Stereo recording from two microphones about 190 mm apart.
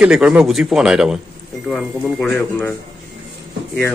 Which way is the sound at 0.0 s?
5° right (ahead or behind).